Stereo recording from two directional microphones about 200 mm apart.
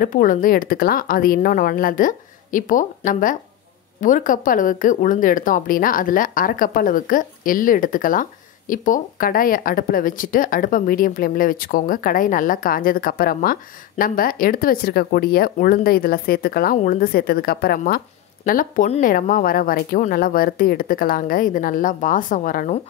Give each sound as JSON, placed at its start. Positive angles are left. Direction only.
{"t": 0.0, "sound": "speech", "side_deg": 40}